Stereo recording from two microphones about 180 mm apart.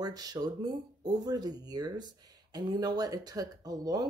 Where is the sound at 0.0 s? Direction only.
20° right (ahead or behind).